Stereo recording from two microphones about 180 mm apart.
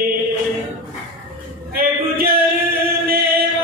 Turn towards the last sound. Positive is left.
turn(degrees=-55)  # may be behind; listen again after turning